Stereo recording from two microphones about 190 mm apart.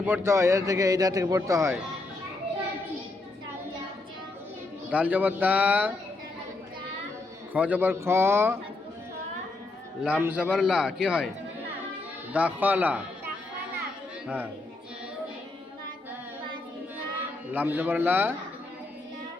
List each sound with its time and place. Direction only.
0.0 s a man's voice: 10° right (ahead or behind)
4.9 s a man's voice: 10° right (ahead or behind)
7.5 s a man's voice: 10° right (ahead or behind)
10.0 s a man's voice: 10° right (ahead or behind)
12.3 s a man's voice: 10° right (ahead or behind)
14.3 s a man's voice: 10° right (ahead or behind)
17.5 s a man's voice: 10° right (ahead or behind)